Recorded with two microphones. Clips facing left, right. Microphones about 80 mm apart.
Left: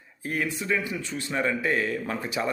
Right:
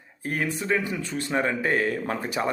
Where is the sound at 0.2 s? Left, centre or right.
Right.